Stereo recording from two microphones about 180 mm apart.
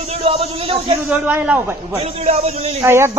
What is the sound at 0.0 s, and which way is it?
Speech, 35° right (ahead or behind).